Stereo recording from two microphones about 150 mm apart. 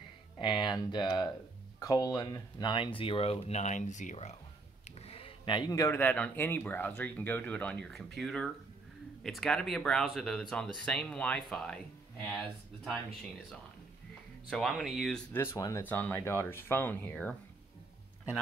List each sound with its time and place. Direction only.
0.4 s a sound: 30° left (ahead or behind)
1.8 s speech: 25° left (ahead or behind); by 4.4 s 50° left (ahead or behind)
5.0 s speech: 40° left (ahead or behind); by 13.0 s 5° left (ahead or behind)
14.5 s speech: centre (ahead or behind)
15.3 s speech: 20° left (ahead or behind)